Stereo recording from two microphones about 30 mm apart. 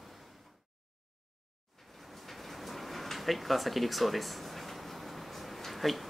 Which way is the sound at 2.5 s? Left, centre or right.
Centre.